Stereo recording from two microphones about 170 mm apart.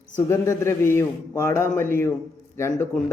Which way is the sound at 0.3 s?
15° left (ahead or behind).